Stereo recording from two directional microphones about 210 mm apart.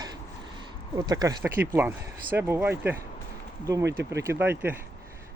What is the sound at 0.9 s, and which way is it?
Speech, 20° right (ahead or behind).